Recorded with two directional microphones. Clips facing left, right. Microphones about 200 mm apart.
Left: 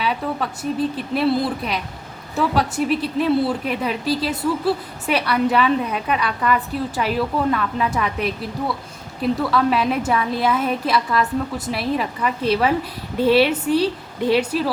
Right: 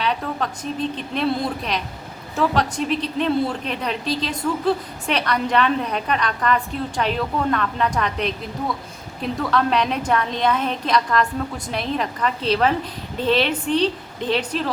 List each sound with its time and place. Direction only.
0.0 s a woman's voice: 5° left (ahead or behind)